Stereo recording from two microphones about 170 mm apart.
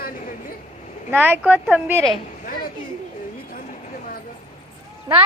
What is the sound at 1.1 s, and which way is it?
Speech, 10° right (ahead or behind).